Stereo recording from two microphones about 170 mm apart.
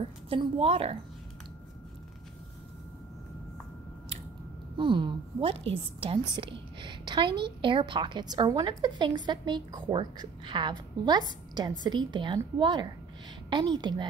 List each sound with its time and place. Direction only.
0.3 s a woman's voice: 35° right (ahead or behind)
4.7 s a woman's voice: 30° right (ahead or behind)